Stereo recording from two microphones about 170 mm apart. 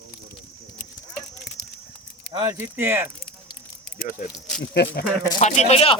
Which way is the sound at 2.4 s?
15° right (ahead or behind).